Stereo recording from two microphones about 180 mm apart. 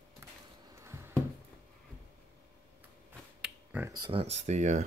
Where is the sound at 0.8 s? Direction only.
15° right (ahead or behind).